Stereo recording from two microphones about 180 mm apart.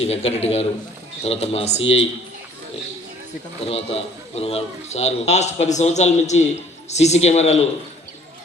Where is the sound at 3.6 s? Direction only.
35° left (ahead or behind).